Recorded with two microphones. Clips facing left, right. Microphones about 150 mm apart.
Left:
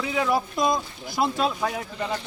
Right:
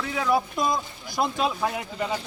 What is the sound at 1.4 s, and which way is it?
Speech, 10° right (ahead or behind).